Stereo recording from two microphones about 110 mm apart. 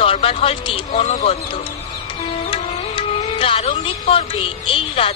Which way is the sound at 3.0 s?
55° left (ahead or behind).